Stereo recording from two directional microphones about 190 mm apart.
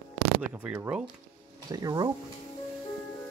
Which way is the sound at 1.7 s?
20° right (ahead or behind).